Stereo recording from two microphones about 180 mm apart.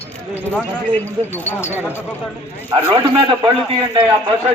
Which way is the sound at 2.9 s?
25° right (ahead or behind).